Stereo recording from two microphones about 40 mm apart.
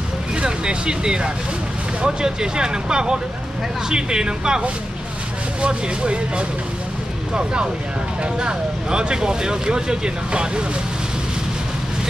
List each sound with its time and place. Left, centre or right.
0.4 s speech: right
8.2 s speech: right